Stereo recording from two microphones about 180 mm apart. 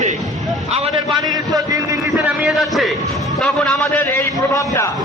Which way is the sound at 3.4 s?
5° left (ahead or behind).